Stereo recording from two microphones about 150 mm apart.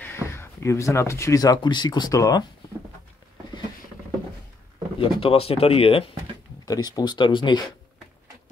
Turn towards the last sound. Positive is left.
turn(degrees=30)  # may be behind; listen again after turning